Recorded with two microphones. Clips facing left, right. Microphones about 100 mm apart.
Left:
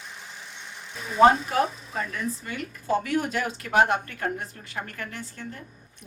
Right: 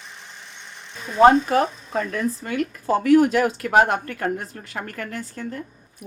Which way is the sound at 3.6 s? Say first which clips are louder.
Left 1 dB; 50° right (ahead or behind).